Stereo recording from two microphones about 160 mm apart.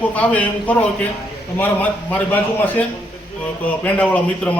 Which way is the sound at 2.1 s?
10° left (ahead or behind).